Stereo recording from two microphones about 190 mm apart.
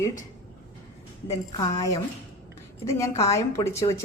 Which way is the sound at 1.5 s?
15° left (ahead or behind).